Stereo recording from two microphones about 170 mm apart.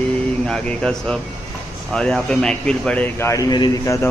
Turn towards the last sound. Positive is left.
turn(degrees=20)  # may be behind; listen again after turning